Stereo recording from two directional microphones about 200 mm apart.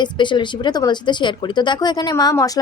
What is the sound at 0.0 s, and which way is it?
Speech, 25° left (ahead or behind).